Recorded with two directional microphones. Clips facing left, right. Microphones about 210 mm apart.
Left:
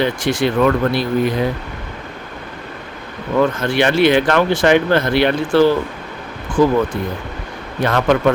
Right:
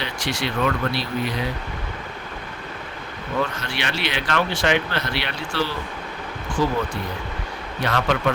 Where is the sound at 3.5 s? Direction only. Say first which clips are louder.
Left 13 dB; 50° left (ahead or behind).